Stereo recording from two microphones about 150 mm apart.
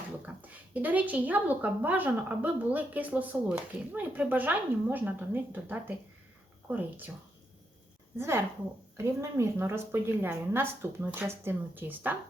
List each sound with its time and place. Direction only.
0.4 s a woman's voice: 10° right (ahead or behind)
8.2 s a woman's voice: 15° right (ahead or behind)